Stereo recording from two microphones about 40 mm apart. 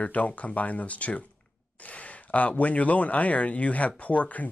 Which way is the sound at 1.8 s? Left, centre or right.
Left.